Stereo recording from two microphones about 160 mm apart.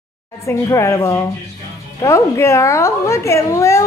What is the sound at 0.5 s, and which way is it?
Speech, 20° left (ahead or behind).